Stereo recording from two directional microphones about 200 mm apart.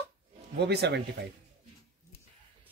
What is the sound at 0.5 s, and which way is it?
Speech, 55° right (ahead or behind).